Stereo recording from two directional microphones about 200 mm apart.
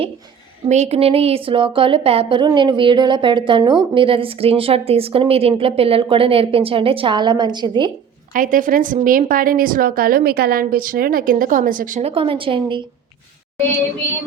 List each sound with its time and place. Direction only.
0.7 s speech: 35° right (ahead or behind)
8.3 s a woman's voice: 45° right (ahead or behind); by 12.8 s 25° right (ahead or behind)